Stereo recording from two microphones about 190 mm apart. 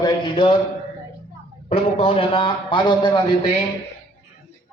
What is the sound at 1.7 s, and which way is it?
Speech, 30° left (ahead or behind).